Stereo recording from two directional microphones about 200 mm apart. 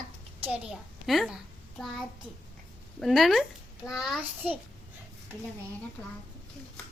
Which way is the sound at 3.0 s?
Centre (ahead or behind).